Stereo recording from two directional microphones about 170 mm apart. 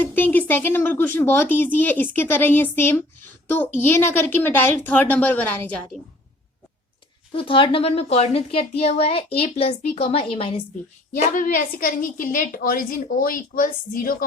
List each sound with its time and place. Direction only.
0.0 s speech: 10° left (ahead or behind)
7.3 s a woman's voice: 30° left (ahead or behind)
11.1 s a woman's voice: 50° left (ahead or behind)